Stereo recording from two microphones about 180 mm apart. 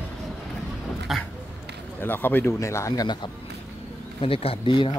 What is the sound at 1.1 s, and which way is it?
Dog, centre (ahead or behind).